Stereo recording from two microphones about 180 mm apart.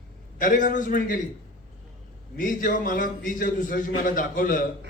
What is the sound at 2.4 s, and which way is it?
A man's voice, 50° left (ahead or behind).